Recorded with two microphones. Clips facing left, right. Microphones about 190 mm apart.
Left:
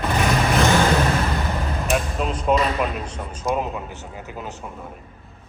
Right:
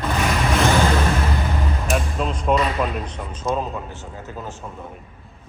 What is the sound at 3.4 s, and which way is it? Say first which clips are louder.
A man's voice: even; 10° left (ahead or behind).